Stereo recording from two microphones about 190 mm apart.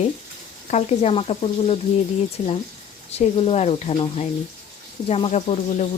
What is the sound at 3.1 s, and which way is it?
Speech, 35° left (ahead or behind).